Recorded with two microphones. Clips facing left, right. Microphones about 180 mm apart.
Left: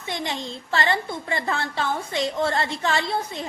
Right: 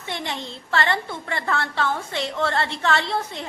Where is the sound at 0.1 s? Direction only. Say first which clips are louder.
Left 1 dB; 15° left (ahead or behind).